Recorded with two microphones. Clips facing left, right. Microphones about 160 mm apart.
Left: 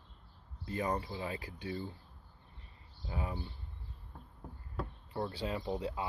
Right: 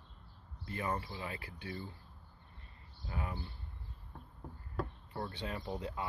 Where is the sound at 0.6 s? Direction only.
20° left (ahead or behind).